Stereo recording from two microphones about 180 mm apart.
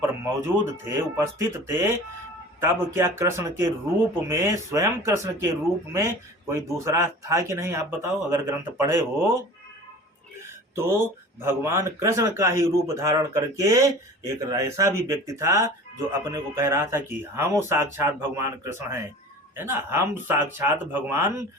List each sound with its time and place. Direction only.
0.4 s speech: 15° right (ahead or behind)
10.8 s speech: 15° right (ahead or behind)